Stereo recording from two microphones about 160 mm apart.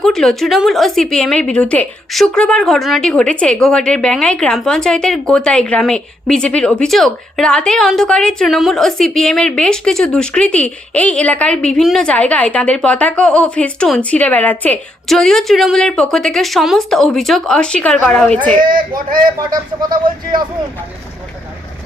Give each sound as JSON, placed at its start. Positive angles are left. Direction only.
{"t": 0.0, "sound": "a woman's voice", "side_deg": 5}
{"t": 18.6, "sound": "speech", "side_deg": -60}